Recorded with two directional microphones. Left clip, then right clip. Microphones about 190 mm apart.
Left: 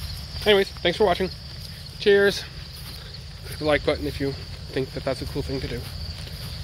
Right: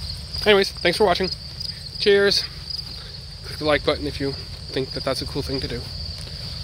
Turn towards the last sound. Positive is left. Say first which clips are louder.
# right 3 dB
turn(degrees=-10)  # may be behind; listen again after turning